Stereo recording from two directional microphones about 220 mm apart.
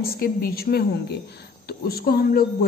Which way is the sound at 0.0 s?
45° left (ahead or behind).